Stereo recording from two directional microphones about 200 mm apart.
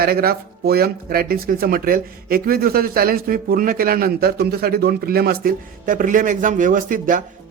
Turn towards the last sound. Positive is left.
turn(degrees=-40)  # may be behind; listen again after turning